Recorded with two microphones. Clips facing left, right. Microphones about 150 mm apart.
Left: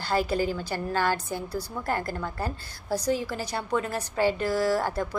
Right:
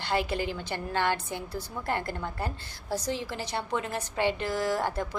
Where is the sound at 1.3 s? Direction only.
40° left (ahead or behind).